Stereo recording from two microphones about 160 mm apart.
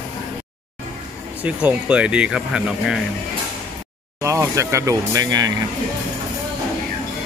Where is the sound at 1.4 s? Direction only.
10° right (ahead or behind).